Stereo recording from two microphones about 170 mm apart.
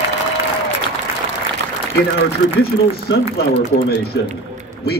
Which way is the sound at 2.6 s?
70° left (ahead or behind).